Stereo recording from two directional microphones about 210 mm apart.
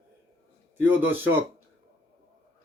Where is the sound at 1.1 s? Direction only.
10° right (ahead or behind).